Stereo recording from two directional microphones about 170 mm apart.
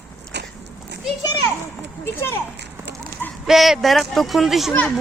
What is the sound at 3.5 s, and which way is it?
Speech, centre (ahead or behind).